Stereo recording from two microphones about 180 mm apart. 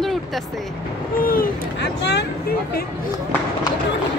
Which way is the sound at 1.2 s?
55° left (ahead or behind).